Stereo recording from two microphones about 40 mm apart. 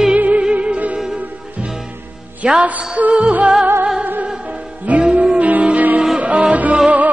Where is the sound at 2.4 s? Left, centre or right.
Right.